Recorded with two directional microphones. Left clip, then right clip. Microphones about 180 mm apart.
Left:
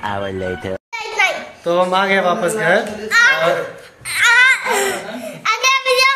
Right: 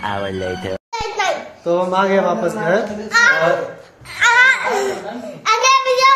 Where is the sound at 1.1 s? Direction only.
15° left (ahead or behind).